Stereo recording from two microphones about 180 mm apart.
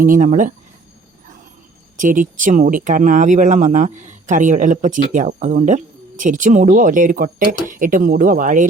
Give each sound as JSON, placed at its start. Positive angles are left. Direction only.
{"t": 0.0, "sound": "speech", "side_deg": -45}
{"t": 2.0, "sound": "speech", "side_deg": -45}